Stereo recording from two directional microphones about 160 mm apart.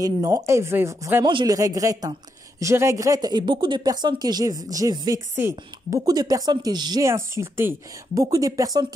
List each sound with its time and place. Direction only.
0.0 s speech: 20° right (ahead or behind)